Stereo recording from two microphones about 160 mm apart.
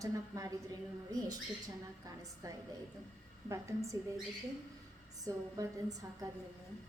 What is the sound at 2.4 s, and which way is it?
A woman's voice, 20° right (ahead or behind).